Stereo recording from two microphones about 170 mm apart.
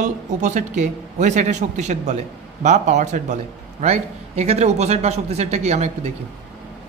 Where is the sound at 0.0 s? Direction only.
45° right (ahead or behind).